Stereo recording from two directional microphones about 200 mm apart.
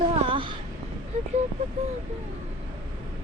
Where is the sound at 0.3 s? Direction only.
25° right (ahead or behind).